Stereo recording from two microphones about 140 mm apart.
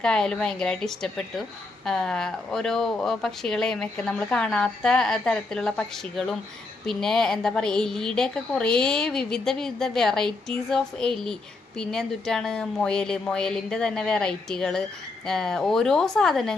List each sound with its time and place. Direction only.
0.0 s a woman's voice: 5° left (ahead or behind)